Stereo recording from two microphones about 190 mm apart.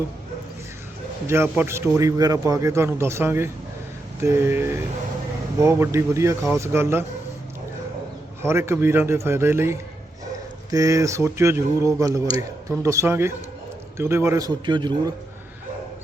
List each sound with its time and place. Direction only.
1.3 s speech: 10° right (ahead or behind)
8.4 s a man's voice: 15° right (ahead or behind)